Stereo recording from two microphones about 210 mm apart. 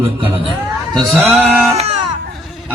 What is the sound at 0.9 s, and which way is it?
Male singing, 5° right (ahead or behind).